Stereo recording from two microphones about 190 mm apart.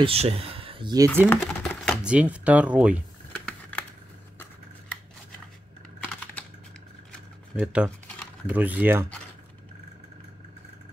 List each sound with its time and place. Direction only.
0.0 s speech: 30° right (ahead or behind); by 1.3 s 15° right (ahead or behind)
1.4 s speech: 5° right (ahead or behind)
3.3 s typing: 5° left (ahead or behind)
7.6 s speech: 5° right (ahead or behind)